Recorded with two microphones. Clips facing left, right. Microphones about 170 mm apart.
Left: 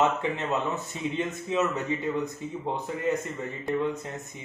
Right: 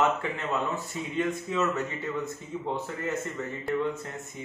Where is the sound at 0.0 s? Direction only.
20° left (ahead or behind).